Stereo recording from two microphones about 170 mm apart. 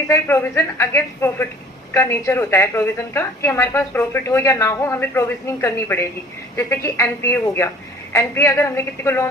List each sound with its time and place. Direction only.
0.1 s a woman's voice: 15° left (ahead or behind)